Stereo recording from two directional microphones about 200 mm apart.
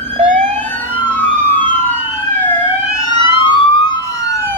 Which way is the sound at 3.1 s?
25° left (ahead or behind).